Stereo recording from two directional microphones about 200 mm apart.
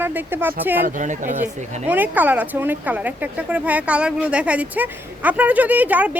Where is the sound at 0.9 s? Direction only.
40° right (ahead or behind).